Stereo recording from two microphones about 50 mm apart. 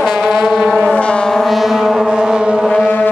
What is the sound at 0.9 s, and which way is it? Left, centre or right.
Vehicle, left.